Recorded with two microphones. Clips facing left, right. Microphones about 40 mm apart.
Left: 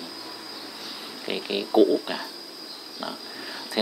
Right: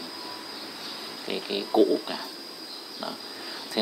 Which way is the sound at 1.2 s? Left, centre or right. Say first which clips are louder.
Left 2 dB; centre.